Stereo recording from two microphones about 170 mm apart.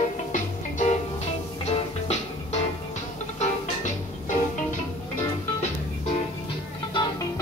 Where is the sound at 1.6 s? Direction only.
40° left (ahead or behind).